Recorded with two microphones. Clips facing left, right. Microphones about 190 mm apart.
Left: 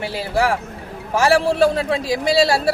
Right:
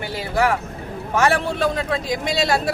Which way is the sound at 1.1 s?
30° left (ahead or behind).